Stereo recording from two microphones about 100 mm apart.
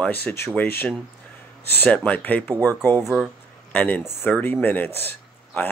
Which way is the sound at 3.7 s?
15° left (ahead or behind).